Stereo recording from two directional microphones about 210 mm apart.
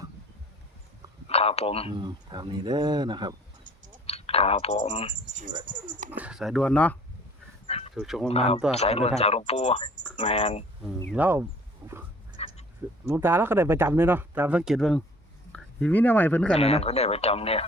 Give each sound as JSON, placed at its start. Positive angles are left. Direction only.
{"t": 1.3, "sound": "speech", "side_deg": 30}
{"t": 1.9, "sound": "speech", "side_deg": -20}
{"t": 4.0, "sound": "speech", "side_deg": 30}
{"t": 6.1, "sound": "speech", "side_deg": -5}
{"t": 7.7, "sound": "a sound", "side_deg": 30}
{"t": 7.9, "sound": "speech", "side_deg": 0}
{"t": 8.3, "sound": "speech", "side_deg": 30}
{"t": 11.1, "sound": "speech", "side_deg": -10}
{"t": 12.4, "sound": "duck", "side_deg": 30}
{"t": 13.1, "sound": "speech", "side_deg": -10}
{"t": 16.6, "sound": "speech", "side_deg": 30}